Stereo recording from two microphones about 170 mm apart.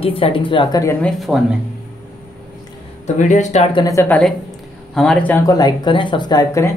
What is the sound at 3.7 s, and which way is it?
Speech, 20° left (ahead or behind).